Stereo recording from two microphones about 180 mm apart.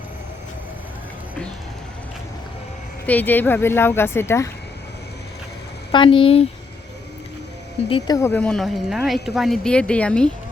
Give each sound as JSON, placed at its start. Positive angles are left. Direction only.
{"t": 3.1, "sound": "speech", "side_deg": 10}
{"t": 5.9, "sound": "speech", "side_deg": 30}
{"t": 7.9, "sound": "speech", "side_deg": 25}